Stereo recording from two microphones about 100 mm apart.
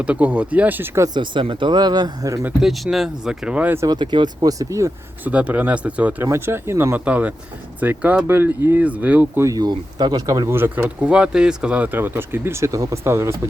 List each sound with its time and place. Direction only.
0.0 s speech: 15° right (ahead or behind)
1.1 s speech: 55° right (ahead or behind)
2.6 s speech: centre (ahead or behind)
3.8 s speech: 50° right (ahead or behind)
4.5 s speech: 30° right (ahead or behind)
5.2 s speech: 15° right (ahead or behind)
6.2 s speech: 25° right (ahead or behind)
9.4 s speech: 35° right (ahead or behind)
9.6 s speech: 45° right (ahead or behind)
10.5 s speech: 20° right (ahead or behind)